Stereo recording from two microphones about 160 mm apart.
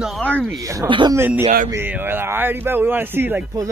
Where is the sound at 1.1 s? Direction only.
15° right (ahead or behind).